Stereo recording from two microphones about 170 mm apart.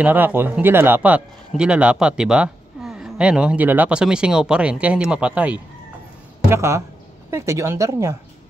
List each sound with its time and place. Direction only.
0.0 s speech: 10° right (ahead or behind)